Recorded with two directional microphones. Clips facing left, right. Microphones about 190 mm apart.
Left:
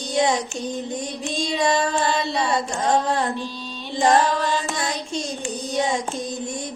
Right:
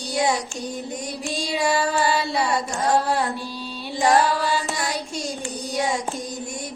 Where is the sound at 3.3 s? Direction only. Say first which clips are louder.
Left 1 dB; 10° right (ahead or behind).